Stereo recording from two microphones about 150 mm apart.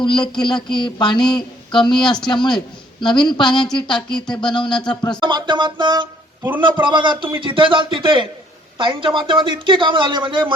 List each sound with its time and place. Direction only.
0.0 s a woman's voice: 30° left (ahead or behind)
1.4 s a sound: 30° left (ahead or behind)
1.9 s speech: 5° left (ahead or behind)
2.2 s a woman's voice: 30° left (ahead or behind)
4.3 s a sound: 30° left (ahead or behind)
5.2 s speech: 30° right (ahead or behind)